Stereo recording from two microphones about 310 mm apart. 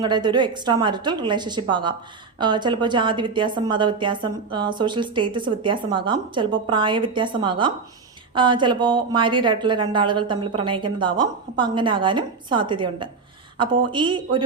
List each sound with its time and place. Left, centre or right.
0.0 s a woman's voice: centre